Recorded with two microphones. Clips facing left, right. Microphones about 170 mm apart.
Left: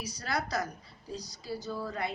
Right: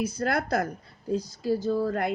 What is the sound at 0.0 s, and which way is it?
Speech, 55° right (ahead or behind).